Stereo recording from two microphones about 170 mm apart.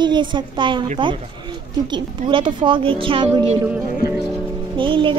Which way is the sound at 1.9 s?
30° right (ahead or behind).